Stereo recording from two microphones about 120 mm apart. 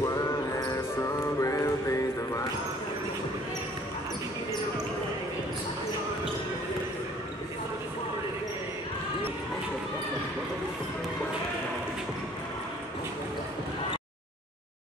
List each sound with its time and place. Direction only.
0.0 s music: 30° left (ahead or behind)